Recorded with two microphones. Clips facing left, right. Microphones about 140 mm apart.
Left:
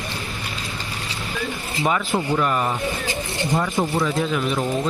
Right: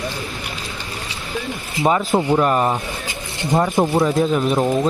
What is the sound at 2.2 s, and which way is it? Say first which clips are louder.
Speech: right 5 dB; 35° right (ahead or behind).